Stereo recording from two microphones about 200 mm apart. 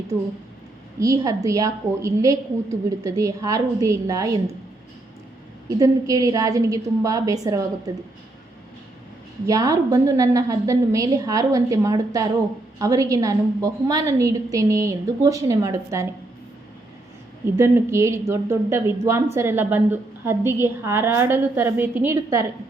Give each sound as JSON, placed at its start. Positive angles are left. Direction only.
{"t": 0.9, "sound": "a woman's voice", "side_deg": -15}
{"t": 5.6, "sound": "a woman's voice", "side_deg": -15}
{"t": 9.5, "sound": "a woman's voice", "side_deg": -15}
{"t": 17.6, "sound": "a woman's voice", "side_deg": -15}